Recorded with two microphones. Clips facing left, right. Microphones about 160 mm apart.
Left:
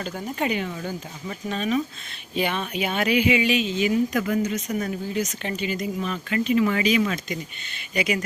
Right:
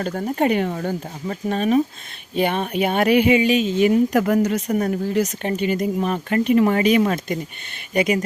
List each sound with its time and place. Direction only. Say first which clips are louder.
0.0 s speech: right 7 dB; 50° right (ahead or behind)
5.4 s speech: right 6 dB; 50° right (ahead or behind)